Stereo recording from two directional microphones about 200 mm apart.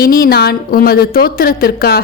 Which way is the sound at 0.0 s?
45° left (ahead or behind).